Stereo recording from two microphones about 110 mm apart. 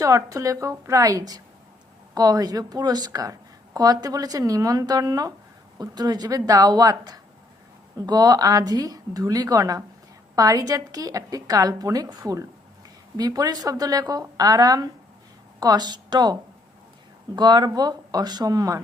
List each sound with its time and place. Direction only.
0.0 s a woman's voice: 30° right (ahead or behind)